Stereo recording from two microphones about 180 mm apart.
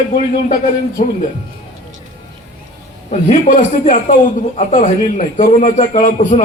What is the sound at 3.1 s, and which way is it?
A man's voice, 45° left (ahead or behind).